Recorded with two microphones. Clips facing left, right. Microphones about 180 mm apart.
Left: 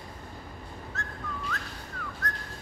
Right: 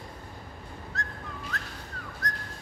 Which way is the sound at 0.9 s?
35° right (ahead or behind).